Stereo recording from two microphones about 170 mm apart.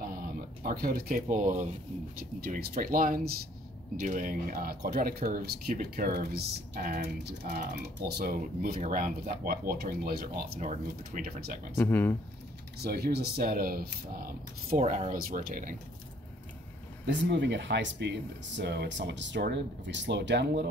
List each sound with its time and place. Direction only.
0.0 s speech: 55° right (ahead or behind)
10.6 s speech: 50° right (ahead or behind)
11.7 s speech: 10° left (ahead or behind)
12.7 s speech: 70° right (ahead or behind)
14.7 s speech: 45° right (ahead or behind)
17.0 s speech: 90° right